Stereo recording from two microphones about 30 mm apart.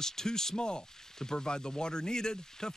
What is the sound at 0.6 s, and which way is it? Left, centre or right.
Speech, left.